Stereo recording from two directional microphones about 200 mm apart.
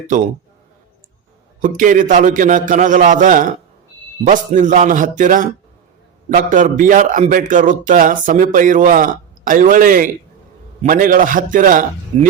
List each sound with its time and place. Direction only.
1.6 s a man's voice: 40° right (ahead or behind)